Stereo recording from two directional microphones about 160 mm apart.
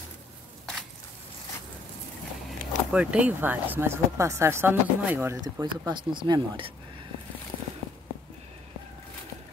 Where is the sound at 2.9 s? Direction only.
10° right (ahead or behind); by 7.0 s 35° right (ahead or behind).